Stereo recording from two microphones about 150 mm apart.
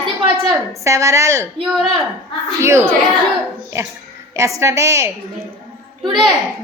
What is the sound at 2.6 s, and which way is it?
Speech, 20° right (ahead or behind).